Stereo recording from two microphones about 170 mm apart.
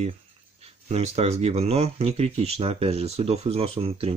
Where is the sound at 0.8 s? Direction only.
40° right (ahead or behind).